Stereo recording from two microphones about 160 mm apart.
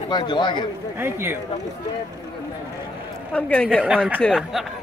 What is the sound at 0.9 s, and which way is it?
Speech, 15° right (ahead or behind).